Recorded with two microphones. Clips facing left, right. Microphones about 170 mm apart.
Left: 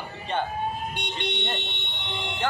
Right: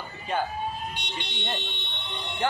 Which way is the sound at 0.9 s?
55° left (ahead or behind).